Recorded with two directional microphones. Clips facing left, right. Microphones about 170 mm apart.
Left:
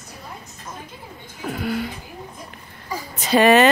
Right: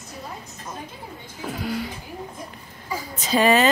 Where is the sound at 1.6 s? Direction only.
60° left (ahead or behind).